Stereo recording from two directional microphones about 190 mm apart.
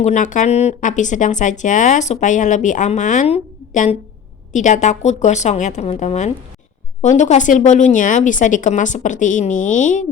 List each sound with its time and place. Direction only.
0.0 s speech: 40° left (ahead or behind)